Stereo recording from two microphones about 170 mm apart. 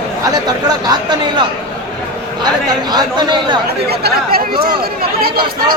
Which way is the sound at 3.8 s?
70° right (ahead or behind).